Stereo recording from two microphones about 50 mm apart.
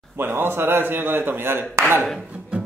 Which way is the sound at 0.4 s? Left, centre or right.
Right.